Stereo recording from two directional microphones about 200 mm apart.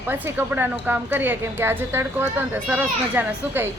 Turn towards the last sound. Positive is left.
turn(degrees=-10)  # may be behind; listen again after turning